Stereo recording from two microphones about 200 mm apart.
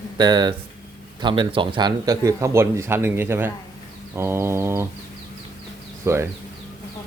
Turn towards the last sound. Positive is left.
turn(degrees=-15)  # may be behind; listen again after turning